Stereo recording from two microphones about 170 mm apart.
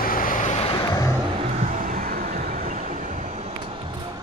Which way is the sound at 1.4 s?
40° right (ahead or behind).